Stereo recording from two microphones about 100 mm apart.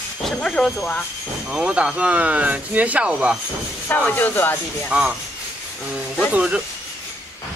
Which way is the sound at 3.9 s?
20° left (ahead or behind).